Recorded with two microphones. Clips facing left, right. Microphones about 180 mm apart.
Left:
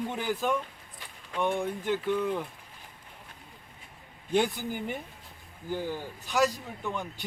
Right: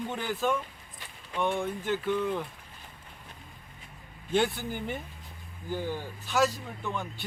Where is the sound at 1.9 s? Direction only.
5° left (ahead or behind).